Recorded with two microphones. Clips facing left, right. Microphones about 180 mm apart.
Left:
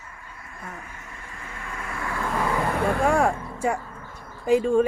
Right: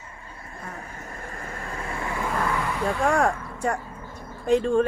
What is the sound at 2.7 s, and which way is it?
Vehicle, 55° left (ahead or behind).